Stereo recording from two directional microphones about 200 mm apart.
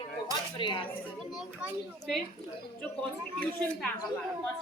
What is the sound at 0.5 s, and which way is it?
Speech, 25° left (ahead or behind).